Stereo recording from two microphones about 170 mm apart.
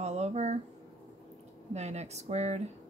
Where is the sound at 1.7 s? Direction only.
40° right (ahead or behind).